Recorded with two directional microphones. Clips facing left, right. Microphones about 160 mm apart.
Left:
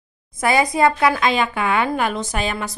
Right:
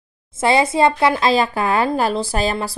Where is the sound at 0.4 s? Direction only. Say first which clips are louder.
Right 2 dB; 25° right (ahead or behind).